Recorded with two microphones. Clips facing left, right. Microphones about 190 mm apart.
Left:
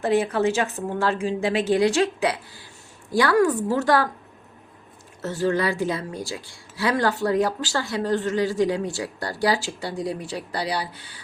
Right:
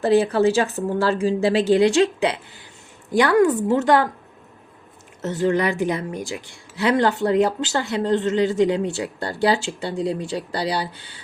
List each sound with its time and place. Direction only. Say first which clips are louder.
0.0 s a woman's voice: right 4 dB; 35° right (ahead or behind)
5.2 s a woman's voice: right 3 dB; 20° right (ahead or behind)